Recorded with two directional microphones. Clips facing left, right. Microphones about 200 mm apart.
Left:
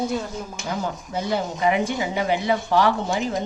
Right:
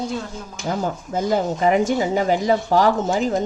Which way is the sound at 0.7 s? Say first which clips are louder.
Right 5 dB; 45° right (ahead or behind).